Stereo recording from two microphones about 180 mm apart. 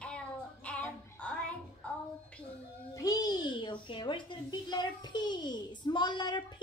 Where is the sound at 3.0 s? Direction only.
20° left (ahead or behind).